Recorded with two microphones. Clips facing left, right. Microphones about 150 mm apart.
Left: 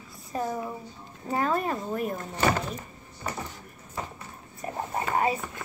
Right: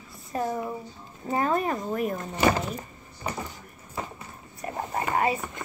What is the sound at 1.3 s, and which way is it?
Speech, 5° right (ahead or behind).